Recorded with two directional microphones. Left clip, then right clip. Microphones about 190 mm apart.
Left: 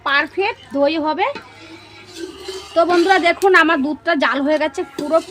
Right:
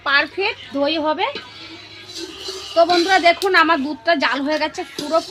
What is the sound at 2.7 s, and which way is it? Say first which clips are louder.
A woman's voice: left 1 dB; 50° left (ahead or behind).